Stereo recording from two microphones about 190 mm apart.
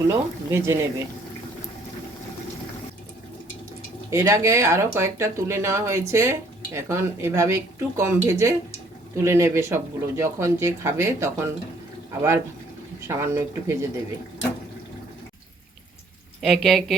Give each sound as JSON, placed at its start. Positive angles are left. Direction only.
{"t": 0.1, "sound": "speech", "side_deg": -15}
{"t": 4.1, "sound": "speech", "side_deg": -15}
{"t": 13.1, "sound": "speech", "side_deg": -15}
{"t": 16.4, "sound": "a woman's voice", "side_deg": 0}